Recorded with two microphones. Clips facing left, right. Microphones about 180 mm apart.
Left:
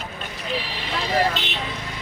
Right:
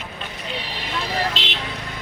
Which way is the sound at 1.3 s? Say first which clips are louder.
Even; 90° right.